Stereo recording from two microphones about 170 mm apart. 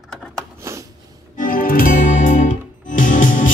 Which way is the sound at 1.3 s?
55° left (ahead or behind).